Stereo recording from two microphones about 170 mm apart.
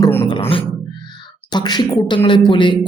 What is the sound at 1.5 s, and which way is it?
Speech, 25° left (ahead or behind).